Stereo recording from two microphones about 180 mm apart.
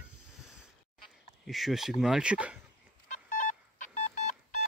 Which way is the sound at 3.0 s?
45° left (ahead or behind).